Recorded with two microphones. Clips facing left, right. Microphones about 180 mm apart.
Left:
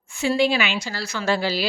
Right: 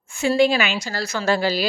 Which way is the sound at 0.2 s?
45° right (ahead or behind).